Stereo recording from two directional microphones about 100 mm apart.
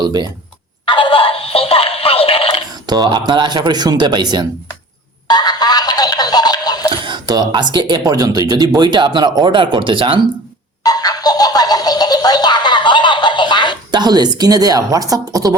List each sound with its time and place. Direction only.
0.0 s speech: 45° right (ahead or behind)
0.9 s synthetic singing: 55° left (ahead or behind)
2.8 s speech: 40° right (ahead or behind)
5.3 s a sound: 45° left (ahead or behind)
7.0 s speech: 50° right (ahead or behind)
10.8 s music: 40° left (ahead or behind)
13.9 s a woman's voice: 45° right (ahead or behind)